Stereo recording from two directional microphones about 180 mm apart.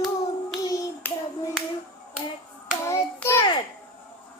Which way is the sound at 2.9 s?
15° left (ahead or behind).